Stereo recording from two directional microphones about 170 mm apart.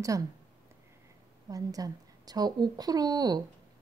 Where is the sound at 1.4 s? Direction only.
20° right (ahead or behind).